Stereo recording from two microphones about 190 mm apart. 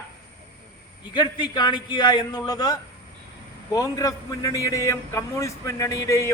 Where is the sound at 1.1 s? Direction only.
20° left (ahead or behind).